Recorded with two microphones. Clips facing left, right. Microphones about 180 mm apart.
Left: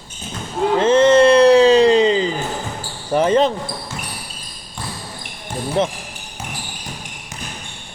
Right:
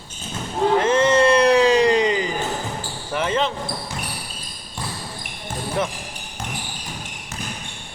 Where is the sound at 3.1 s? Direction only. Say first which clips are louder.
Left 7 dB; 35° left (ahead or behind).